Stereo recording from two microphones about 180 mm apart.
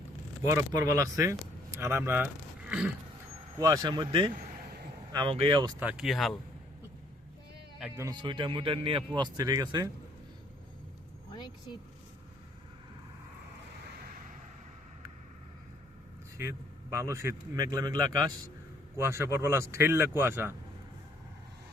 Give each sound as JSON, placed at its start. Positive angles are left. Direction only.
{"t": 0.4, "sound": "speech", "side_deg": -20}
{"t": 3.6, "sound": "speech", "side_deg": -20}
{"t": 5.8, "sound": "speech", "side_deg": -5}
{"t": 7.9, "sound": "speech", "side_deg": -20}
{"t": 16.4, "sound": "speech", "side_deg": -15}